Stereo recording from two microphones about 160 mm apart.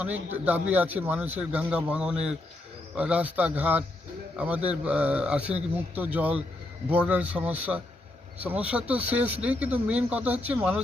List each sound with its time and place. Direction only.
0.0 s a man's voice: 10° right (ahead or behind)